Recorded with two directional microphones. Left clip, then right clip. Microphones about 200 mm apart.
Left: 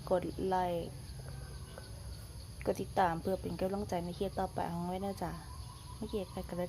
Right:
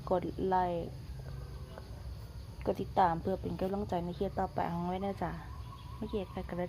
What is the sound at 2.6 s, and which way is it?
Speech, centre (ahead or behind).